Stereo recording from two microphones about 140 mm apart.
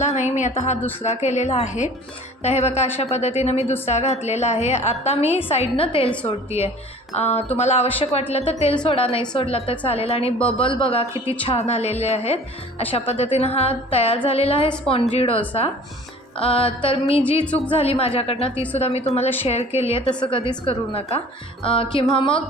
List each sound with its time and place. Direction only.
0.0 s a woman's voice: 55° left (ahead or behind)
7.1 s a woman's voice: 50° left (ahead or behind)
8.8 s music: 40° left (ahead or behind)
9.3 s a woman's voice: 40° left (ahead or behind)
10.6 s music: 40° left (ahead or behind)
11.3 s a woman's voice: 45° left (ahead or behind)
16.4 s music: 40° left (ahead or behind)
17.7 s a woman's voice: 40° left (ahead or behind)
21.6 s music: 40° left (ahead or behind)